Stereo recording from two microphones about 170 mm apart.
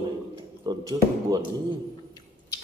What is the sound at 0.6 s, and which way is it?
Speech, 20° right (ahead or behind).